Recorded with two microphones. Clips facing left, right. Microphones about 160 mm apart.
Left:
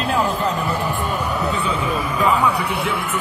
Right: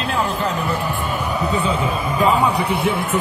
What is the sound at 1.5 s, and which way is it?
A man's voice, 20° right (ahead or behind).